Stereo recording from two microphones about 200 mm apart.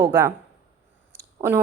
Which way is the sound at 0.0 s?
20° right (ahead or behind).